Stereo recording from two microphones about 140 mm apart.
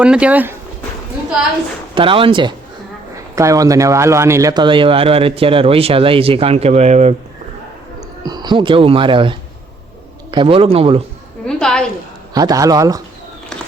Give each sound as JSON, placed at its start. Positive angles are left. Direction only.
{"t": 0.0, "sound": "speech", "side_deg": -10}
{"t": 2.0, "sound": "speech", "side_deg": -40}
{"t": 3.3, "sound": "speech", "side_deg": -25}
{"t": 8.2, "sound": "speech", "side_deg": -30}
{"t": 11.4, "sound": "a sound", "side_deg": 5}
{"t": 12.3, "sound": "a man's voice", "side_deg": -25}